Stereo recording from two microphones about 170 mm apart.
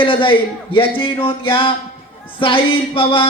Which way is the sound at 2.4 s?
30° left (ahead or behind).